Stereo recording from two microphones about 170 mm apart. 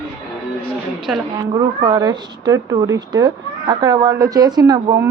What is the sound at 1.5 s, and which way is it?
A woman's voice, 25° right (ahead or behind).